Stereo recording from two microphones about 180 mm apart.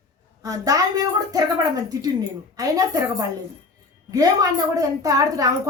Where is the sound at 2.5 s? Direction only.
20° right (ahead or behind).